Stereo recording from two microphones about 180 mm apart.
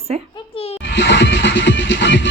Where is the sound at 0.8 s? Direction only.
80° left.